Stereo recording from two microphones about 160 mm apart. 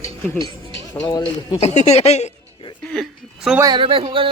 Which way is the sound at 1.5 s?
45° left (ahead or behind).